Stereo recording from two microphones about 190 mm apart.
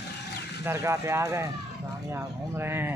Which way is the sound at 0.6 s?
15° right (ahead or behind).